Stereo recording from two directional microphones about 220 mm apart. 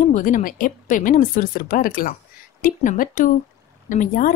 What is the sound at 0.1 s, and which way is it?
A woman's voice, 35° left (ahead or behind).